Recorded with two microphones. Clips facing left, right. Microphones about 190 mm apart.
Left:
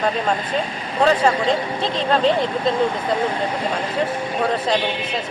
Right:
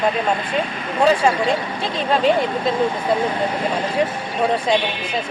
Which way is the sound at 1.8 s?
10° right (ahead or behind).